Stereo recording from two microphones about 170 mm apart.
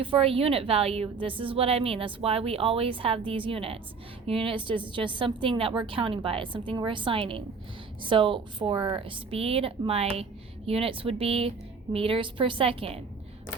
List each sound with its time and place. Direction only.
0.0 s a woman's voice: 35° right (ahead or behind)